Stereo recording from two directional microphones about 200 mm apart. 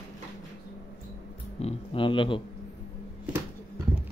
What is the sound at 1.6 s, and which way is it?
Speech, 30° left (ahead or behind).